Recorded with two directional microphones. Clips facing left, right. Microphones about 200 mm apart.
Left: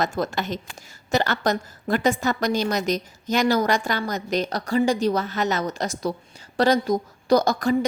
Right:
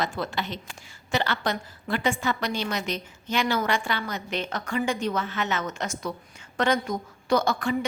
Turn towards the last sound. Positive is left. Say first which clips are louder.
# left 5 dB
turn(degrees=40)  # may be behind; listen again after turning